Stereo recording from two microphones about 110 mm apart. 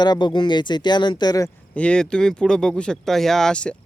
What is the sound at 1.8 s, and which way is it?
Speech, 10° left (ahead or behind).